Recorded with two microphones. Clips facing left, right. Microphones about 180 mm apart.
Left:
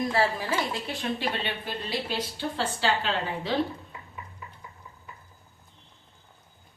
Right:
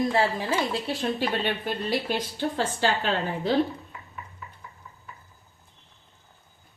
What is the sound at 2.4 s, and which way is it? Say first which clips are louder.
A woman's voice: right 3 dB; 45° right (ahead or behind).